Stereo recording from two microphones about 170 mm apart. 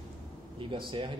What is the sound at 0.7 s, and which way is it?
Speech, 30° right (ahead or behind).